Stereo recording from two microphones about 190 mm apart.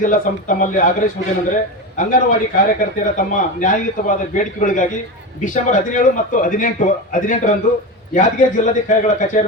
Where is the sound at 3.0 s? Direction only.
45° left (ahead or behind).